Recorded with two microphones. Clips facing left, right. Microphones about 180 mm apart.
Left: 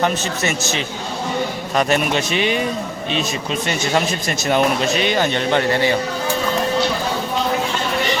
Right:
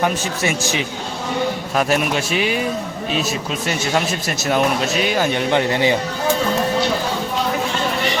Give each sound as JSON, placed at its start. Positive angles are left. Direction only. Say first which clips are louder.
{"t": 0.0, "sound": "a man's voice", "louder": "even", "side_deg": -10}
{"t": 3.7, "sound": "speech", "louder": "even", "side_deg": -5}